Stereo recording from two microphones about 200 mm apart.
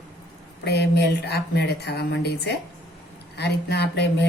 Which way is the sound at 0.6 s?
55° left (ahead or behind).